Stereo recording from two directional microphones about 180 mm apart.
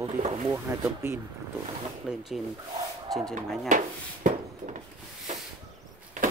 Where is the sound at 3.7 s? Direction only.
45° right (ahead or behind).